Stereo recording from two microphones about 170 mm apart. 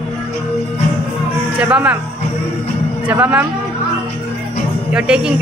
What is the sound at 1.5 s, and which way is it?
Speech, 10° right (ahead or behind).